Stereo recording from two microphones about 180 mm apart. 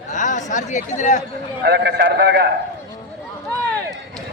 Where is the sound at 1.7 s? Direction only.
70° right (ahead or behind).